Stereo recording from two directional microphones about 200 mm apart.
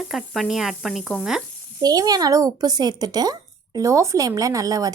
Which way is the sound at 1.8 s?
20° right (ahead or behind).